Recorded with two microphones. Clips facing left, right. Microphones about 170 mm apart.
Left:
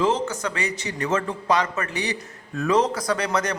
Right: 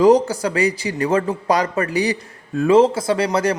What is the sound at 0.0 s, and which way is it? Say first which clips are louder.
A man's voice: right 9 dB; 40° right (ahead or behind).